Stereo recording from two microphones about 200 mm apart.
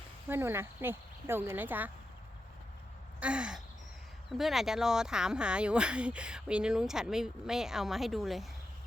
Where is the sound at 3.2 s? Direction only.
5° right (ahead or behind).